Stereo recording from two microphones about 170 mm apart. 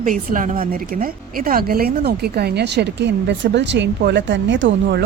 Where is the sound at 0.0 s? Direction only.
50° right (ahead or behind).